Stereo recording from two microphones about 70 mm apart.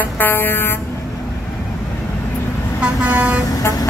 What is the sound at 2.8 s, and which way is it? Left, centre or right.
Vehicle, centre.